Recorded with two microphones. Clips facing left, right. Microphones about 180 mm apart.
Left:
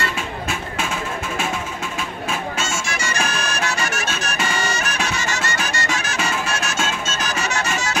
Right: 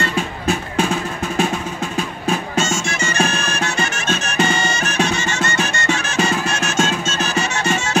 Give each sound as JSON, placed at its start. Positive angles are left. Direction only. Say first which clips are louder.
{"t": 0.0, "sound": "music", "louder": "right 5 dB", "side_deg": -35}
{"t": 2.0, "sound": "music", "louder": "right 6 dB", "side_deg": -30}